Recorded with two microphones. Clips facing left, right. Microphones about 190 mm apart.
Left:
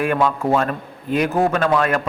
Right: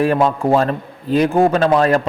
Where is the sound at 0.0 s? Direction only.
30° right (ahead or behind).